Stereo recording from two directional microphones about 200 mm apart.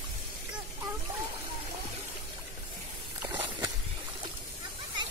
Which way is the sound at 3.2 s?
20° right (ahead or behind).